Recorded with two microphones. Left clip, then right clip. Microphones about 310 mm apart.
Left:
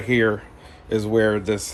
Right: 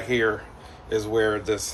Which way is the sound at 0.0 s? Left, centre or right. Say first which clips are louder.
Left 3 dB; left.